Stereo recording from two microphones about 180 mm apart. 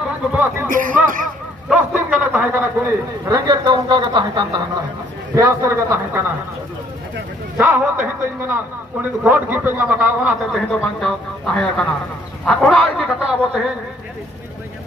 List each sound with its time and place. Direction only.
0.3 s a man's voice: 10° right (ahead or behind)
0.7 s speech: 45° right (ahead or behind)
1.7 s a man's voice: 5° right (ahead or behind)
7.5 s a man's voice: 10° right (ahead or behind)
10.5 s speech: 5° left (ahead or behind)